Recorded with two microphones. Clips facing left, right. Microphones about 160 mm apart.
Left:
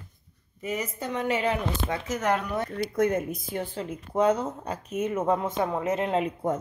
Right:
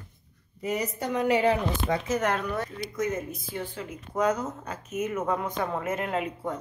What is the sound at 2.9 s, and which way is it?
Speech, 60° left (ahead or behind).